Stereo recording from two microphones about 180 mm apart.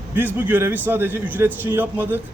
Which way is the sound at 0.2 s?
10° right (ahead or behind).